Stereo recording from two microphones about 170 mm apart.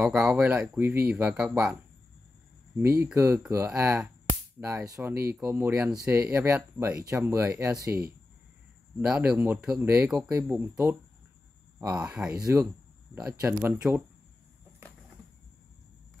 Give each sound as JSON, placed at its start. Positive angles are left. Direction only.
{"t": 0.0, "sound": "speech", "side_deg": -5}
{"t": 2.8, "sound": "speech", "side_deg": -15}
{"t": 9.0, "sound": "speech", "side_deg": -5}
{"t": 12.4, "sound": "speech", "side_deg": -20}